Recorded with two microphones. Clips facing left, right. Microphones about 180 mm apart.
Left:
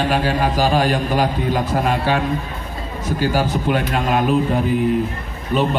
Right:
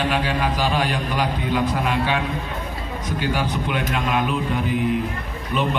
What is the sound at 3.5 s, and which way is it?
A man's voice, 40° left (ahead or behind).